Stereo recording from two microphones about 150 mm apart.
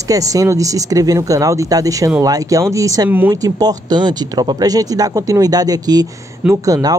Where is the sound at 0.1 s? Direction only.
25° right (ahead or behind).